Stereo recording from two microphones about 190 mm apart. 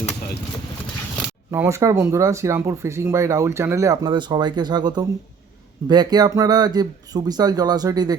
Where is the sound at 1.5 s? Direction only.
15° right (ahead or behind).